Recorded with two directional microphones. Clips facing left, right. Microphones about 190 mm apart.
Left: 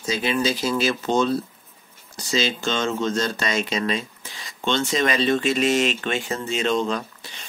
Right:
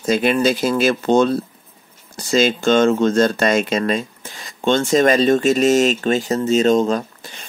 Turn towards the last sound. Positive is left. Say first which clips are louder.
# right 5 dB
turn(degrees=-45)  # may be behind; listen again after turning